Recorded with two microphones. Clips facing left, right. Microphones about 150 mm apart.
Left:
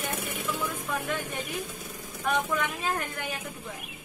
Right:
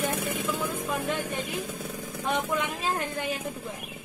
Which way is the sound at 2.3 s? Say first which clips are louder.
Even; 25° right (ahead or behind).